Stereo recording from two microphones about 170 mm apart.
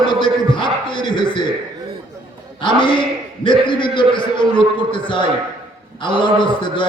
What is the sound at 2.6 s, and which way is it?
A man's voice, 30° left (ahead or behind).